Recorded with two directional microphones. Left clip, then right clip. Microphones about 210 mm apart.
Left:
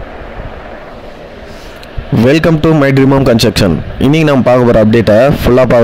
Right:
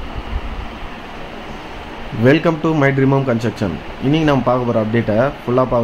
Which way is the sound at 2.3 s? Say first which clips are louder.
Left 5 dB; 45° left (ahead or behind).